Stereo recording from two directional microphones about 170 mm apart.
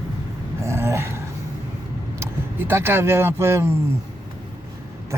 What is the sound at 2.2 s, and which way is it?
Speech, 15° right (ahead or behind).